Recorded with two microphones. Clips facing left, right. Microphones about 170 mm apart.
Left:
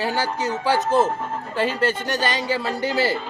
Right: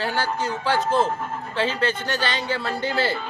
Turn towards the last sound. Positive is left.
turn(degrees=15)  # may be behind; listen again after turning